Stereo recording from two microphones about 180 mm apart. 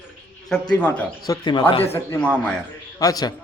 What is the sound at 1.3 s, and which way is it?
Speech, 25° left (ahead or behind).